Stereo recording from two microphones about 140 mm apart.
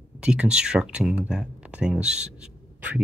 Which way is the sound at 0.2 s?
5° right (ahead or behind).